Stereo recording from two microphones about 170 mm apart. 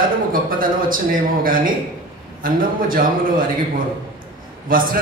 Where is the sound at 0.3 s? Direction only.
55° right (ahead or behind).